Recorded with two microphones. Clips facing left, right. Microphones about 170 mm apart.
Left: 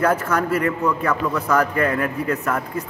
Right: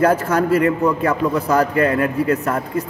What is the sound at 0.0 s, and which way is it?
A man's voice, 35° right (ahead or behind).